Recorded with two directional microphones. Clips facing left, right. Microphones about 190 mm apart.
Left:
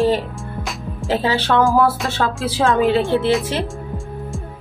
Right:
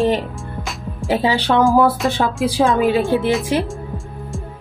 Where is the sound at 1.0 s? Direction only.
15° right (ahead or behind).